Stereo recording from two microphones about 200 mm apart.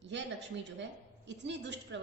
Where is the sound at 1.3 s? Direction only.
65° right (ahead or behind).